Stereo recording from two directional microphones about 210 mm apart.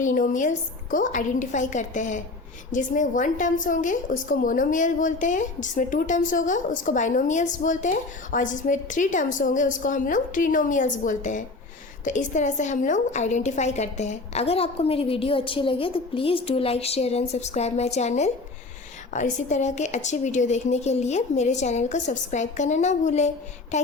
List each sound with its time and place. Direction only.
0.0 s a woman's voice: 40° left (ahead or behind)